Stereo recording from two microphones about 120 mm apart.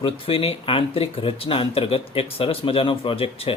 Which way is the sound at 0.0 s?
50° left (ahead or behind).